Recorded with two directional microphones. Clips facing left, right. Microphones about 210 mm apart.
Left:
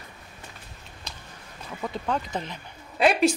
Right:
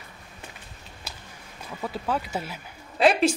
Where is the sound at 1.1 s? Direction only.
5° right (ahead or behind).